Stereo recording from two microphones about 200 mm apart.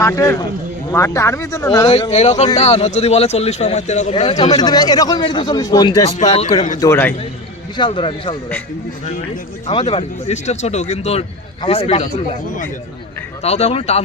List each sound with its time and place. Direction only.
0.0 s speech: 15° left (ahead or behind)
1.9 s speech: 30° left (ahead or behind)
6.1 s speech: 35° left (ahead or behind)
6.7 s speech: 15° left (ahead or behind)
7.8 s speech: 25° left (ahead or behind)
9.6 s speech: 30° left (ahead or behind)
12.5 s speech: 40° left (ahead or behind)